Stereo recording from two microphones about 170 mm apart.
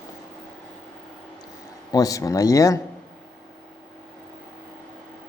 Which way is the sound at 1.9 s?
20° left (ahead or behind).